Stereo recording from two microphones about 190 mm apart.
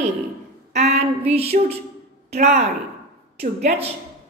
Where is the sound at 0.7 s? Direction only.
35° right (ahead or behind).